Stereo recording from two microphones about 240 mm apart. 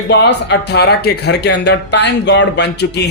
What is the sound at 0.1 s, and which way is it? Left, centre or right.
Speech, left.